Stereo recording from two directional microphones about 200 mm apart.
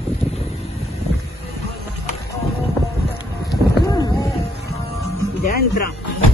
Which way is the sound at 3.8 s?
20° left (ahead or behind).